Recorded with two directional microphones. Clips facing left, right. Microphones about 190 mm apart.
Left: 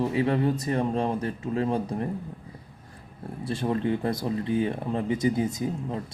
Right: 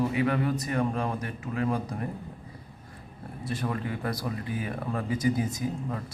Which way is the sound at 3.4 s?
30° left (ahead or behind).